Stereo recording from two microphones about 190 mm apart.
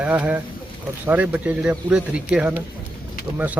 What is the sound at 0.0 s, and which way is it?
Speech, 10° right (ahead or behind).